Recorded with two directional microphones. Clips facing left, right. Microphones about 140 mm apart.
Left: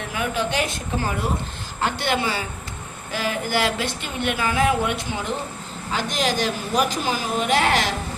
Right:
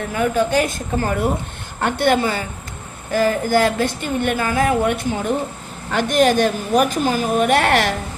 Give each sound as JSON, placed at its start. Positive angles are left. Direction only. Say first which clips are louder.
{"t": 0.1, "sound": "a woman's voice", "louder": "right 7 dB", "side_deg": -45}